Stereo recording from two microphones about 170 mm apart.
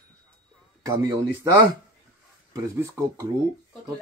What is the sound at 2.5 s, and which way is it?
Speech, 15° right (ahead or behind).